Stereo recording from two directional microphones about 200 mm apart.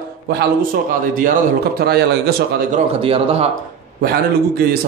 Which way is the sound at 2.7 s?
30° right (ahead or behind).